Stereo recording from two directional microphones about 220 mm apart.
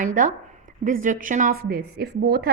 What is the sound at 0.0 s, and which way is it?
A woman's voice, 40° right (ahead or behind).